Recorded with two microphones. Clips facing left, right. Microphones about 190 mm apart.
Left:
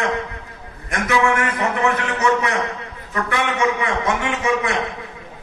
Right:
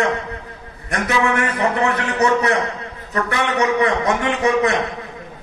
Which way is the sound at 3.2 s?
40° right (ahead or behind).